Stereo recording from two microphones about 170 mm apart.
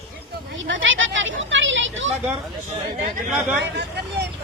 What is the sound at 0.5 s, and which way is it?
Speech, 90° right.